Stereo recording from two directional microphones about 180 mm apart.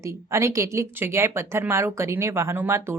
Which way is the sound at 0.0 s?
15° right (ahead or behind).